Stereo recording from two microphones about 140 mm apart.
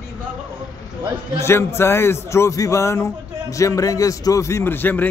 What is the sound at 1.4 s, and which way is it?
A man's voice, 20° left (ahead or behind).